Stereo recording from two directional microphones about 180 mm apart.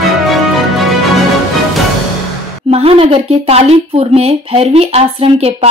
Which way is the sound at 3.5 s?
35° right (ahead or behind).